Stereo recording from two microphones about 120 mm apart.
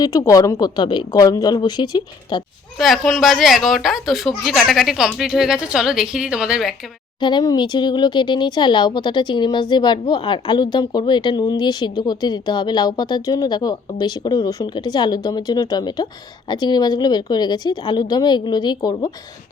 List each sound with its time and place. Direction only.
0.0 s speech: 30° left (ahead or behind)
2.7 s speech: centre (ahead or behind)
7.2 s speech: 40° left (ahead or behind)